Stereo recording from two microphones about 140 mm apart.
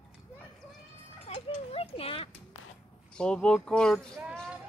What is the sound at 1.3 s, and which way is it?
A child's voice, 40° left (ahead or behind).